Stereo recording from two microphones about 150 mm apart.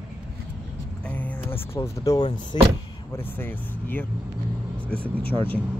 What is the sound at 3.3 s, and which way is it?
Speech, 15° left (ahead or behind).